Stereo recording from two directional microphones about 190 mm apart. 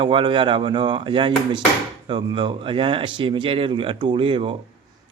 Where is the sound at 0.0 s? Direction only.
25° right (ahead or behind).